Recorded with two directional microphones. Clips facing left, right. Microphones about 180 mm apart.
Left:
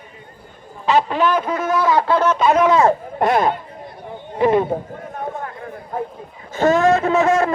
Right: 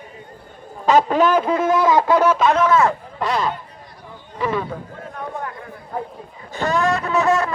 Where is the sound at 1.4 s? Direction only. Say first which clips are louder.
Right 2 dB; 25° right (ahead or behind).